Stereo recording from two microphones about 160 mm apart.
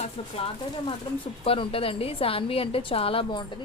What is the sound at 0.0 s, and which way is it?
A woman's voice, 35° left (ahead or behind).